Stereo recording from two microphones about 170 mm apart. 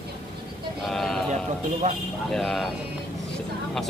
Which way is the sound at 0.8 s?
5° left (ahead or behind).